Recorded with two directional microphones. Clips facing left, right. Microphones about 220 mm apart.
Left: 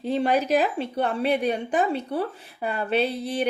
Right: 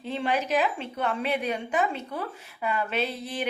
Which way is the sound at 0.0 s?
40° left (ahead or behind).